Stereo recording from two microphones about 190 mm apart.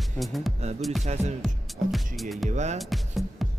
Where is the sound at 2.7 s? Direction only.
Centre (ahead or behind).